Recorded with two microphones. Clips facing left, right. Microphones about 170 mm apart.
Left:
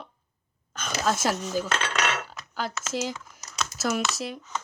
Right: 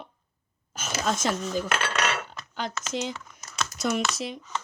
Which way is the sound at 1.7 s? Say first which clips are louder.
Even; centre (ahead or behind).